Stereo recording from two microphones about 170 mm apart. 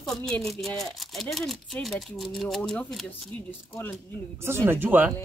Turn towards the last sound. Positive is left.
turn(degrees=-10)  # may be behind; listen again after turning